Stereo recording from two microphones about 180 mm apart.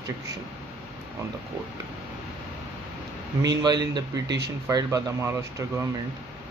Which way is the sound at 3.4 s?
20° right (ahead or behind).